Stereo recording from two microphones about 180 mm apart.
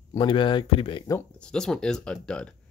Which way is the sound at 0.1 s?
25° left (ahead or behind).